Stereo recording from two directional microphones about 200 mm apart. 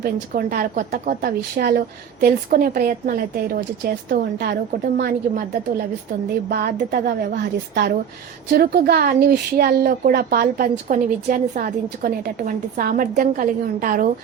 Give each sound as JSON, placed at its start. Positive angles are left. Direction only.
{"t": 0.0, "sound": "speech", "side_deg": -50}
{"t": 6.5, "sound": "speech", "side_deg": -50}
{"t": 8.4, "sound": "speech", "side_deg": -50}